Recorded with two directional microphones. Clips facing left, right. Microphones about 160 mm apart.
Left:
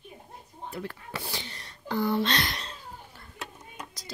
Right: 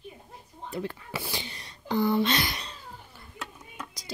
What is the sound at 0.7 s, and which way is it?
Speech, 20° right (ahead or behind).